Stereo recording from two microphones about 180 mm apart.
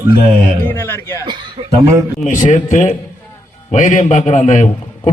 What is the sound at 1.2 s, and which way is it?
Chuckle, 25° right (ahead or behind).